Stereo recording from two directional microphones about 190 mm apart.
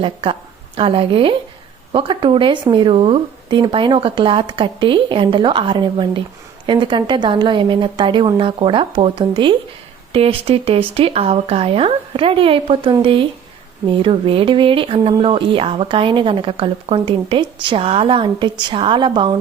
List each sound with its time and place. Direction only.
0.0 s speech: 30° right (ahead or behind)